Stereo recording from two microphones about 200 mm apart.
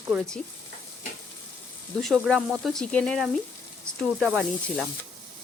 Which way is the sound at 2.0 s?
Centre (ahead or behind).